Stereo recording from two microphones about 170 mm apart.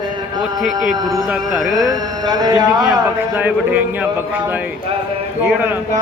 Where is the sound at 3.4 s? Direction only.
10° right (ahead or behind).